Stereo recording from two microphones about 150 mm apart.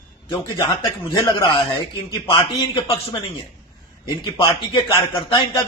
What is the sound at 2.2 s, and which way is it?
Speech, 40° left (ahead or behind).